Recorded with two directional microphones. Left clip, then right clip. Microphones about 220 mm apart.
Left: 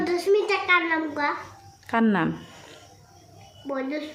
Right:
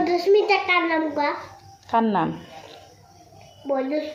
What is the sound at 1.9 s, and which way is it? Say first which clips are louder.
Speech: right 3 dB; 25° left (ahead or behind).